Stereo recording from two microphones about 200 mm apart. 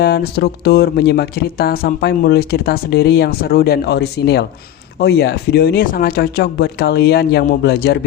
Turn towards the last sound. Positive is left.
turn(degrees=55)  # may be behind; listen again after turning